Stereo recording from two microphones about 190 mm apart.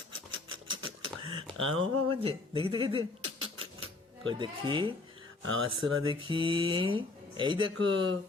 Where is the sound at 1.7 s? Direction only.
30° right (ahead or behind).